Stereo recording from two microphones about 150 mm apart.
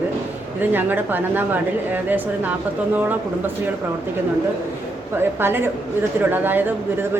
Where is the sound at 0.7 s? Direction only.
15° right (ahead or behind).